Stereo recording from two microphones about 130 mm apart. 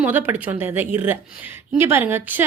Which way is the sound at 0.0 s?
15° right (ahead or behind).